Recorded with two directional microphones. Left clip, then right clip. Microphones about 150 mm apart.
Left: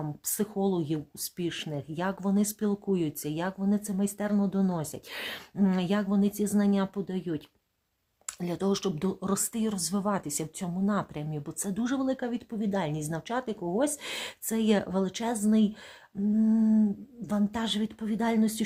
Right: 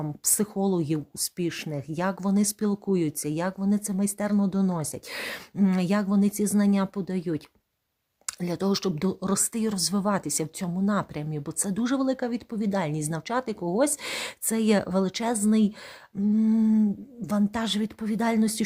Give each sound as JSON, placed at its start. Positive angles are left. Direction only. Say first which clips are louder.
{"t": 0.0, "sound": "speech", "louder": "right 5 dB", "side_deg": -35}
{"t": 16.3, "sound": "a sound", "louder": "right 2 dB", "side_deg": -30}
{"t": 17.2, "sound": "speech", "louder": "right 3 dB", "side_deg": -40}